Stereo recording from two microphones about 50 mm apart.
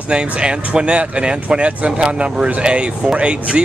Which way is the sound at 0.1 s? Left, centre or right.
Centre.